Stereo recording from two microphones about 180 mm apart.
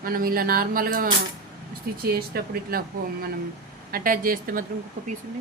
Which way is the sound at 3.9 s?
50° right (ahead or behind).